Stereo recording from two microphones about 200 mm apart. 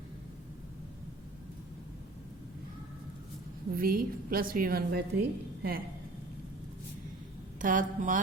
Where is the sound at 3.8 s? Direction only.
45° right (ahead or behind).